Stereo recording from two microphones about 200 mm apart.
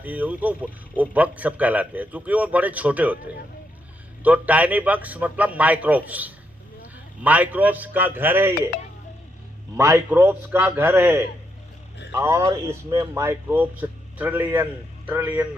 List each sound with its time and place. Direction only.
0.0 s a man's voice: 5° right (ahead or behind)
4.2 s a man's voice: 5° right (ahead or behind)
9.7 s a man's voice: 15° right (ahead or behind)